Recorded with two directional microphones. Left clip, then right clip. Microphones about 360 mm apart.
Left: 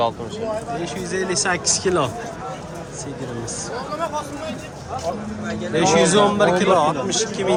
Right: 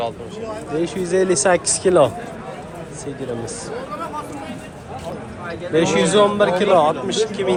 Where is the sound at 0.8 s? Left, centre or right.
Centre.